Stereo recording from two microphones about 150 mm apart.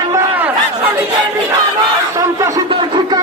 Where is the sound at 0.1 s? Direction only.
15° right (ahead or behind).